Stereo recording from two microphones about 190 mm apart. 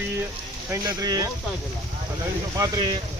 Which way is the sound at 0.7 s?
15° right (ahead or behind).